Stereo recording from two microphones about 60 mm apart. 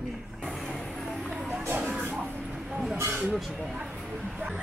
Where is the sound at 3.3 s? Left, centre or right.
Centre.